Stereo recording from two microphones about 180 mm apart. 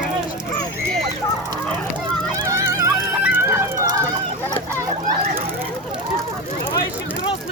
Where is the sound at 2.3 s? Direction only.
15° right (ahead or behind).